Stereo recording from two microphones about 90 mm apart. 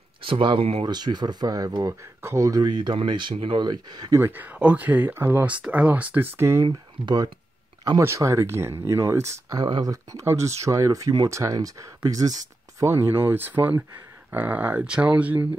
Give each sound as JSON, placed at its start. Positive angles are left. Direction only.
{"t": 0.2, "sound": "speech", "side_deg": -70}
{"t": 0.8, "sound": "speech", "side_deg": -50}
{"t": 3.6, "sound": "speech", "side_deg": -55}
{"t": 4.2, "sound": "speech", "side_deg": -20}
{"t": 6.6, "sound": "speech", "side_deg": -50}
{"t": 8.0, "sound": "speech", "side_deg": -30}
{"t": 9.6, "sound": "speech", "side_deg": -45}
{"t": 12.8, "sound": "speech", "side_deg": -30}